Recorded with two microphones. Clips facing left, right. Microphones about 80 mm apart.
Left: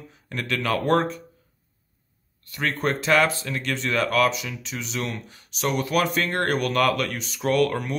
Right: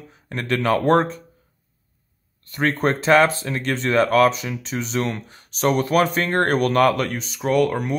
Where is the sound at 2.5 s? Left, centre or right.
Right.